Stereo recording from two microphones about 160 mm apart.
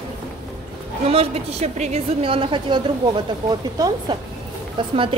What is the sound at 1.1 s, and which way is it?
A woman's voice, 40° right (ahead or behind).